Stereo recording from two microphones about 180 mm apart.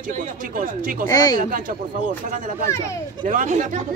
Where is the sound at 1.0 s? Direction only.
20° left (ahead or behind).